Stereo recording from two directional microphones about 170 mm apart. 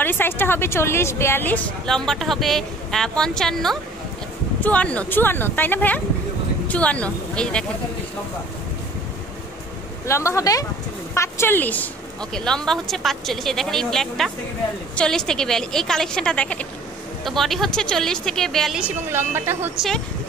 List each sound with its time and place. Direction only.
0.0 s a woman's voice: 10° left (ahead or behind)
10.0 s a woman's voice: 15° left (ahead or behind); by 19.7 s 15° right (ahead or behind)